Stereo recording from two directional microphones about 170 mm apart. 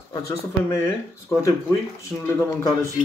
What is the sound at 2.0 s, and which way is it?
Speech, 15° left (ahead or behind).